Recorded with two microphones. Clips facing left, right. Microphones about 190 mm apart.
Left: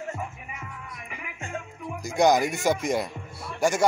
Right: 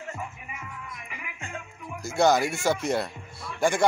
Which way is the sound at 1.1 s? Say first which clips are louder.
Left 4 dB; 40° left (ahead or behind).